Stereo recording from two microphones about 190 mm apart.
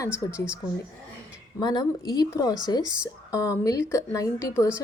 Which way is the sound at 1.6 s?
20° left (ahead or behind).